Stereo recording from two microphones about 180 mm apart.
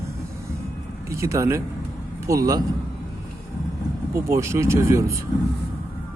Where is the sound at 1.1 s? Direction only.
15° right (ahead or behind).